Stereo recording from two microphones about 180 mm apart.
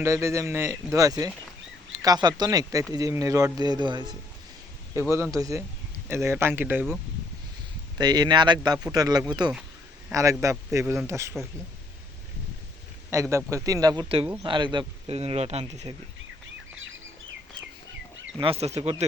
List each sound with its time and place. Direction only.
0.0 s speech: 15° right (ahead or behind)
7.9 s speech: 25° right (ahead or behind)
13.3 s speech: 20° right (ahead or behind); by 16.0 s 35° right (ahead or behind)
18.3 s speech: 30° right (ahead or behind)